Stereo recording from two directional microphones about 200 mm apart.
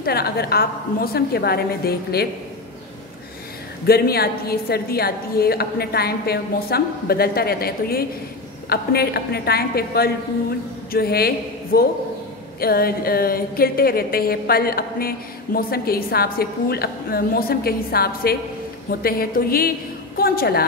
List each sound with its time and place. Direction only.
0.0 s a woman's voice: 50° left (ahead or behind)
3.8 s a woman's voice: 50° left (ahead or behind)